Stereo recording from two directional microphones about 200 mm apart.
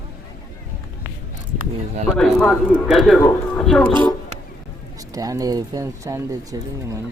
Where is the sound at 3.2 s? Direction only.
15° left (ahead or behind).